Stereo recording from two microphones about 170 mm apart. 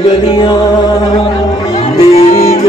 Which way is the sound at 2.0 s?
40° left (ahead or behind).